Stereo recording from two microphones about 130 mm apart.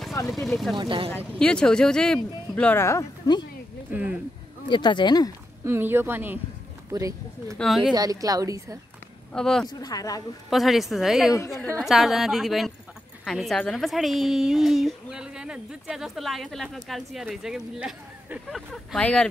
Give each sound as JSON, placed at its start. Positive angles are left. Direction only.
{"t": 0.3, "sound": "a woman's voice", "side_deg": 0}
{"t": 0.7, "sound": "speech", "side_deg": -40}
{"t": 1.1, "sound": "speech", "side_deg": 10}
{"t": 3.9, "sound": "speech", "side_deg": -10}
{"t": 4.6, "sound": "speech", "side_deg": 35}
{"t": 5.7, "sound": "speech", "side_deg": -15}
{"t": 6.9, "sound": "speech", "side_deg": -25}
{"t": 7.5, "sound": "a woman's voice", "side_deg": 0}
{"t": 7.9, "sound": "speech", "side_deg": -30}
{"t": 9.3, "sound": "a woman's voice", "side_deg": 5}
{"t": 9.7, "sound": "speech", "side_deg": 30}
{"t": 10.5, "sound": "a woman's voice", "side_deg": 0}